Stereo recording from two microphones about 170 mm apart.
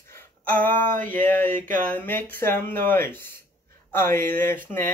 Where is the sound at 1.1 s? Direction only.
10° left (ahead or behind).